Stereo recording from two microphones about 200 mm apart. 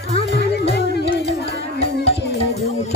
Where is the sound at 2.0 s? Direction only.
30° left (ahead or behind).